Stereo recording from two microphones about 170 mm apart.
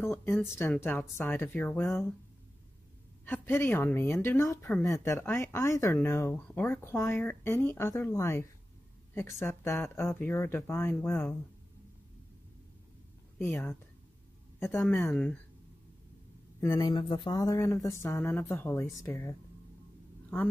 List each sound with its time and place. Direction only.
0.0 s speech: 10° left (ahead or behind)
3.3 s speech: 10° left (ahead or behind)
13.4 s speech: 10° left (ahead or behind)
16.7 s speech: 25° left (ahead or behind)